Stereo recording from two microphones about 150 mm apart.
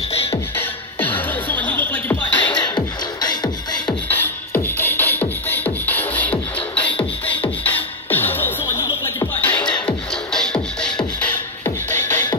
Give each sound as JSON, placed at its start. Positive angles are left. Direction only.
{"t": 0.6, "sound": "music", "side_deg": 10}
{"t": 2.5, "sound": "music", "side_deg": 30}
{"t": 4.1, "sound": "music", "side_deg": 10}
{"t": 9.3, "sound": "music", "side_deg": 10}